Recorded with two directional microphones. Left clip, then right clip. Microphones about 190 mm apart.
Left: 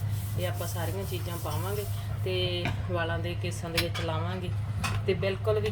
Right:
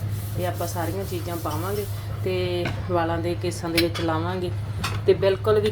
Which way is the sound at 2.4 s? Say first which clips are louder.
Right 5 dB; 20° right (ahead or behind).